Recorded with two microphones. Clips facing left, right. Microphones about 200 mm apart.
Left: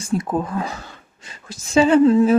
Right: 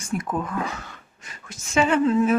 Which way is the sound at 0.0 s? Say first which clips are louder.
Left 5 dB; 30° left (ahead or behind).